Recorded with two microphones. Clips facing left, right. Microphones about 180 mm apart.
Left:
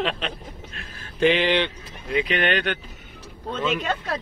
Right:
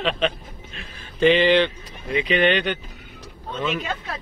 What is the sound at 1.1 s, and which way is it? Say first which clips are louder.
Speech: right 3 dB; 10° left (ahead or behind).